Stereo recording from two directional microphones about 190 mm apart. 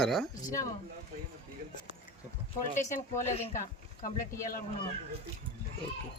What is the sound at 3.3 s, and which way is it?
Speech, 40° left (ahead or behind).